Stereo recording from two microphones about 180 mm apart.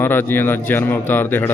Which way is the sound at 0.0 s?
10° left (ahead or behind).